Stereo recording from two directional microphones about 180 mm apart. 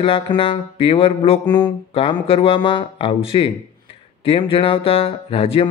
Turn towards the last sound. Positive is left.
turn(degrees=30)  # may be behind; listen again after turning